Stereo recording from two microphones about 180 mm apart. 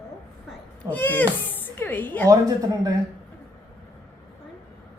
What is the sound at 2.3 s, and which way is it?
Speech, 20° right (ahead or behind).